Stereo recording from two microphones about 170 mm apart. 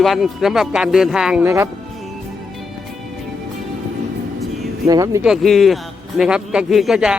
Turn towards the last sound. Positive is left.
turn(degrees=-5)  # may be behind; listen again after turning